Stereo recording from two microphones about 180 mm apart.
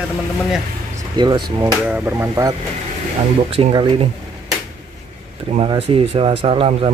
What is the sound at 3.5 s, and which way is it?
Speech, 30° right (ahead or behind).